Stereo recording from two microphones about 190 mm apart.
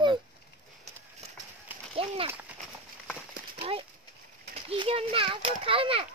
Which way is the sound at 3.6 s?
30° right (ahead or behind).